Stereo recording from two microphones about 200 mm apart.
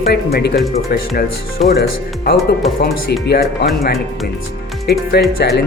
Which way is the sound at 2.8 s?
55° left (ahead or behind).